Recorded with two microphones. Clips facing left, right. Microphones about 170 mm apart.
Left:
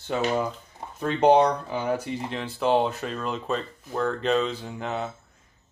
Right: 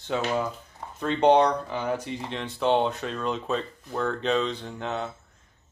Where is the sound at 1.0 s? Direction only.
5° left (ahead or behind).